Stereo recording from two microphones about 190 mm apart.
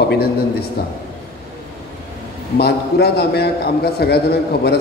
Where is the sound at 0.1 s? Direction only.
55° left (ahead or behind).